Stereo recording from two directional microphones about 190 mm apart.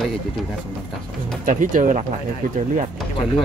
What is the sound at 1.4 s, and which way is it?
Speech, 40° right (ahead or behind).